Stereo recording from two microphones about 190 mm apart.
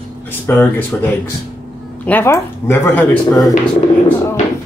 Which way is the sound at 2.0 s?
10° left (ahead or behind).